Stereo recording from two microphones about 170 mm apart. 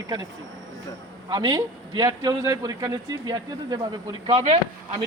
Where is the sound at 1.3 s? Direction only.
25° right (ahead or behind).